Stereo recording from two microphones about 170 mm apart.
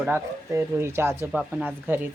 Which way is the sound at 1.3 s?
5° right (ahead or behind).